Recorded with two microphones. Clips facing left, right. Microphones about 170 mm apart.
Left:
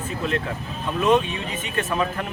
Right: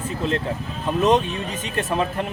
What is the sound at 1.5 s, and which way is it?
Speech, 30° right (ahead or behind).